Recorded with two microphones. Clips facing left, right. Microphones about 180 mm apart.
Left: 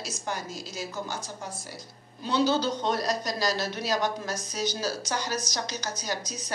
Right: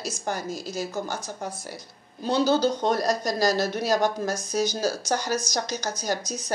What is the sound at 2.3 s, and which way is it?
Speech, 45° right (ahead or behind).